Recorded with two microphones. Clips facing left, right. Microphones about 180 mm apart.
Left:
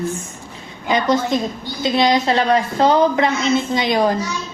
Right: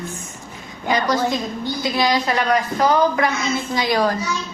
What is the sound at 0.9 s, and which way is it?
A woman's voice, 25° left (ahead or behind).